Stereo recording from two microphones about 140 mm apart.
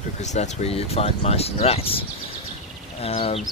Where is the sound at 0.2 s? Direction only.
55° left (ahead or behind).